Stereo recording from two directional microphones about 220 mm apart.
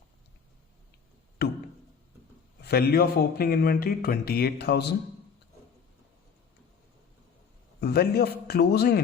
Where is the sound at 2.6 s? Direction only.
45° left (ahead or behind).